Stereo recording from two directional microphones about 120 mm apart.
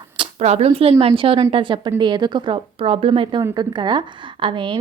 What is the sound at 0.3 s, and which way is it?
Speech, 60° right (ahead or behind).